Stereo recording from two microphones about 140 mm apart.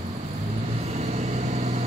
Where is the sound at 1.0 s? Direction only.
55° right (ahead or behind).